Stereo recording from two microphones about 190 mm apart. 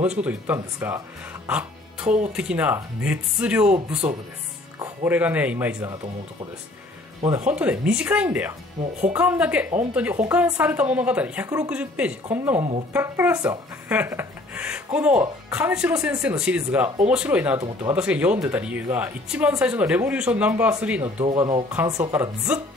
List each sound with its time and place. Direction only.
0.0 s speech: 5° right (ahead or behind)
4.7 s speech: 15° right (ahead or behind)
7.4 s speech: 5° right (ahead or behind)
21.5 s speech: 20° right (ahead or behind)